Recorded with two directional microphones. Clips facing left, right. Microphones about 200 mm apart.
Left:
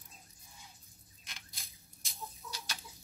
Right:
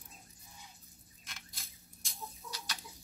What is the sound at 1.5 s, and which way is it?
Chicken, centre (ahead or behind).